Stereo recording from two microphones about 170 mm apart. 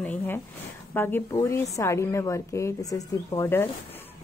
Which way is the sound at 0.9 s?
10° left (ahead or behind).